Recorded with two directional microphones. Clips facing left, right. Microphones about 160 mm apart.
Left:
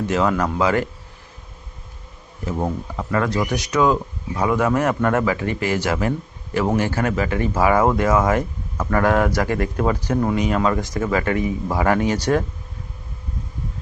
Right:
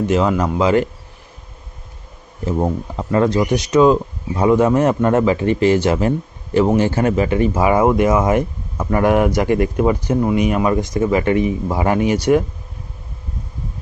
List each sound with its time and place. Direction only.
0.1 s speech: 20° right (ahead or behind)
2.5 s speech: 20° right (ahead or behind)